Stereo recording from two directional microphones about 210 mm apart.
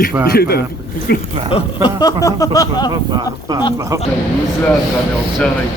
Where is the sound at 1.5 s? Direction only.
25° left (ahead or behind).